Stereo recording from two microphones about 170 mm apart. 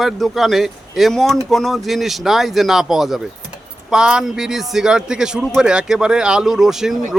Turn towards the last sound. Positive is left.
turn(degrees=0)  # may be behind; listen again after turning